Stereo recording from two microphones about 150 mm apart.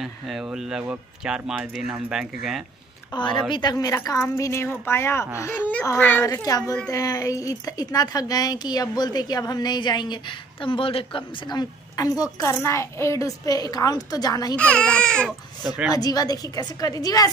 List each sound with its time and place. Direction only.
0.0 s speech: 5° right (ahead or behind)
3.2 s a woman's voice: 30° left (ahead or behind); by 6.2 s 10° left (ahead or behind)
6.2 s a woman's voice: 20° left (ahead or behind)
6.6 s speech: 5° left (ahead or behind)
6.9 s a woman's voice: 25° left (ahead or behind)
12.0 s a woman's voice: 25° left (ahead or behind)
14.6 s speech: 5° left (ahead or behind)
15.9 s a woman's voice: 25° left (ahead or behind)